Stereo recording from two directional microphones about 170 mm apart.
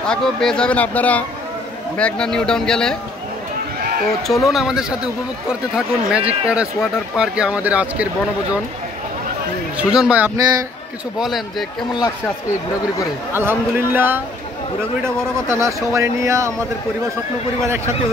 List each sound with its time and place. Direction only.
0.1 s a man's voice: 5° left (ahead or behind)
4.3 s a man's voice: centre (ahead or behind)
9.8 s a man's voice: 5° right (ahead or behind)
13.4 s speech: 15° right (ahead or behind)
15.5 s speech: 15° right (ahead or behind)